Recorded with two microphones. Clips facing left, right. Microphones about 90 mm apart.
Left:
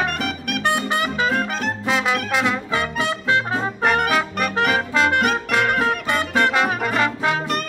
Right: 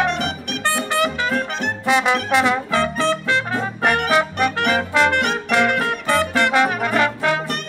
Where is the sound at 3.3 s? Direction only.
20° left (ahead or behind).